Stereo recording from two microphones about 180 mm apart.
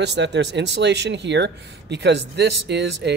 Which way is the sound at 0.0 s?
70° right (ahead or behind).